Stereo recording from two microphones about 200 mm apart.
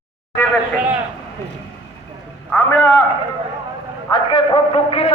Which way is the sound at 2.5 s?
10° left (ahead or behind).